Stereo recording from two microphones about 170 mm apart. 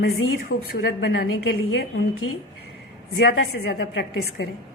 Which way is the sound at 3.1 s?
80° left.